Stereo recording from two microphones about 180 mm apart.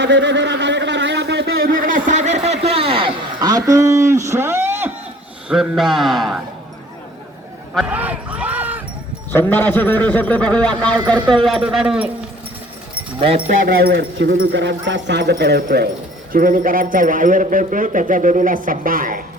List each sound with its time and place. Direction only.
0.0 s a sound: 80° right; by 4.9 s 10° right (ahead or behind)
5.5 s speech: centre (ahead or behind)
7.7 s a sound: 5° right (ahead or behind)
9.3 s a man's voice: 10° left (ahead or behind); by 12.1 s 5° right (ahead or behind)
13.1 s speech: 30° right (ahead or behind)
13.7 s speech: 60° right (ahead or behind)
16.3 s speech: 50° right (ahead or behind)